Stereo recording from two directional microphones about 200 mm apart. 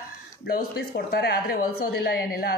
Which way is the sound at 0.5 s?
50° left (ahead or behind).